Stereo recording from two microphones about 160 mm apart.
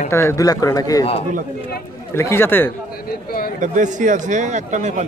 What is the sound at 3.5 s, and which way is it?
A man's voice, 50° right (ahead or behind).